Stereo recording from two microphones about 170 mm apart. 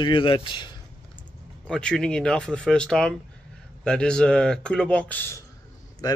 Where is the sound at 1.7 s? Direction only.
5° left (ahead or behind).